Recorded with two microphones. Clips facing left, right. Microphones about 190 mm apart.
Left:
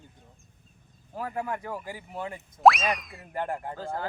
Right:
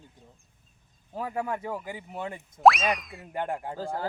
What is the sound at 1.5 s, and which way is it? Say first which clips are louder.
Speech: right 2 dB; 20° right (ahead or behind).